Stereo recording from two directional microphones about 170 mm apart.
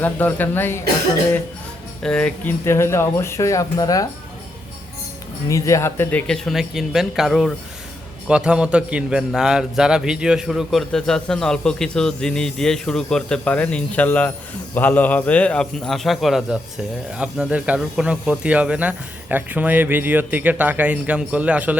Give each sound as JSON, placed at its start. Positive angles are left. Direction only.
{"t": 0.0, "sound": "speech", "side_deg": 10}
{"t": 2.0, "sound": "speech", "side_deg": 5}
{"t": 5.5, "sound": "a man's voice", "side_deg": 20}